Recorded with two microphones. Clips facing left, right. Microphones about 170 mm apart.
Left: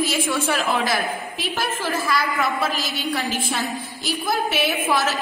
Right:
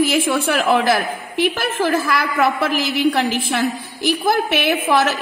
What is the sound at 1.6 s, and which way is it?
A woman's voice, 65° right (ahead or behind).